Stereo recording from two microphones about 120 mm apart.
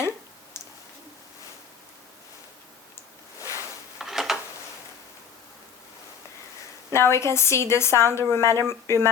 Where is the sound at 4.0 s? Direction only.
5° right (ahead or behind).